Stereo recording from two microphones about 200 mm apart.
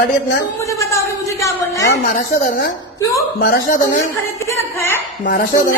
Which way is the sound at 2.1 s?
40° left (ahead or behind).